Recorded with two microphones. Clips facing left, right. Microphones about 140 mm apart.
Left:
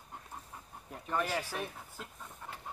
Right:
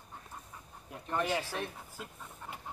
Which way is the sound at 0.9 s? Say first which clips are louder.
Right 1 dB; centre (ahead or behind).